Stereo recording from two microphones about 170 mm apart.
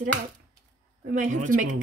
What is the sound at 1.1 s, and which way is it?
Speech, 50° right (ahead or behind).